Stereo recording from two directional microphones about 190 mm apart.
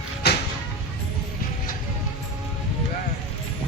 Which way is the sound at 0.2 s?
60° left (ahead or behind).